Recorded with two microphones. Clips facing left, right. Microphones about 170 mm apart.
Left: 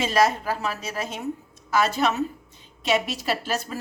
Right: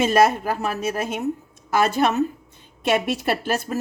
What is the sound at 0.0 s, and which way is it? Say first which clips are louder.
A woman's voice: right 4 dB; 50° right (ahead or behind).